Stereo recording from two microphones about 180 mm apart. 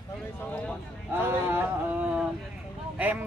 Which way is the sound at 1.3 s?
10° right (ahead or behind).